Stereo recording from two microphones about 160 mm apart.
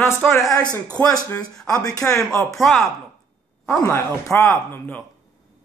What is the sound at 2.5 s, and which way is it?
Speech, centre (ahead or behind).